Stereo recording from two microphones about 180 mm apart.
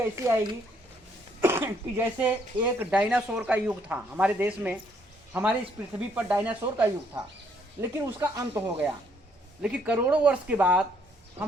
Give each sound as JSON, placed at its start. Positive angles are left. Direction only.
{"t": 0.0, "sound": "speech", "side_deg": -15}
{"t": 9.6, "sound": "speech", "side_deg": -5}